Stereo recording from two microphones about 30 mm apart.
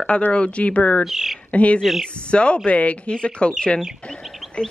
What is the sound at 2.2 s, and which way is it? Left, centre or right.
Speech, left.